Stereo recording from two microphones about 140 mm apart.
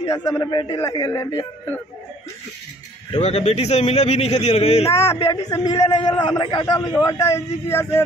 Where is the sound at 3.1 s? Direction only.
45° left (ahead or behind).